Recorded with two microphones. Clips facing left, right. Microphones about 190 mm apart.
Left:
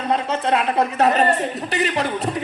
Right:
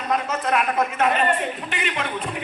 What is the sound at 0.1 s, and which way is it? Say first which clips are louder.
A man's voice: left 2 dB; 30° left (ahead or behind).